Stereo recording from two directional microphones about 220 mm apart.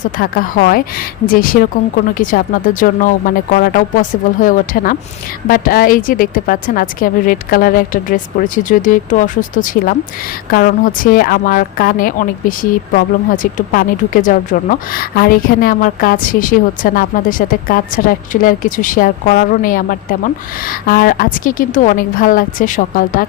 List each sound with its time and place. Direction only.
0.0 s a woman's voice: 40° left (ahead or behind)